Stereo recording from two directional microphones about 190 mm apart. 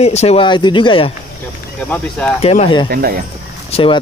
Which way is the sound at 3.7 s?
30° left (ahead or behind).